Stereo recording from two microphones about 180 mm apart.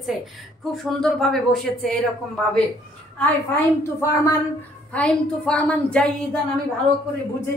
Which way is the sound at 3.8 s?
15° left (ahead or behind).